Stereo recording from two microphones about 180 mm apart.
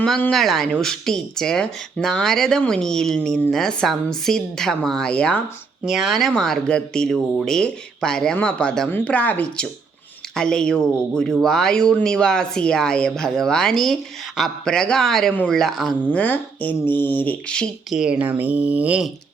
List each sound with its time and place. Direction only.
0.0 s speech: 5° left (ahead or behind)